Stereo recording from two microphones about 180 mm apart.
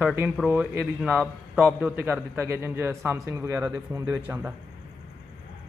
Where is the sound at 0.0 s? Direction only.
10° right (ahead or behind).